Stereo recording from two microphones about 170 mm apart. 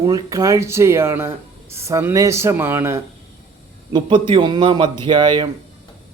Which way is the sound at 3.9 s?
30° right (ahead or behind).